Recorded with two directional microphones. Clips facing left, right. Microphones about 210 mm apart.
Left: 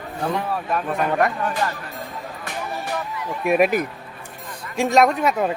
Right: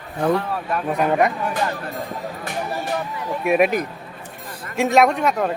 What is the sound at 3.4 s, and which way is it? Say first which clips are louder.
Speech: even; centre (ahead or behind).